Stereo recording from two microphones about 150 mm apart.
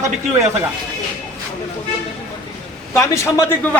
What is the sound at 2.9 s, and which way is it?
Speech, 20° left (ahead or behind).